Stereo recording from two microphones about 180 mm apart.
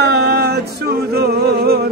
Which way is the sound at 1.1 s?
60° right (ahead or behind).